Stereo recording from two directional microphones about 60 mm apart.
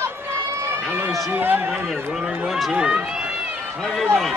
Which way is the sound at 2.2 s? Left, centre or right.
Right.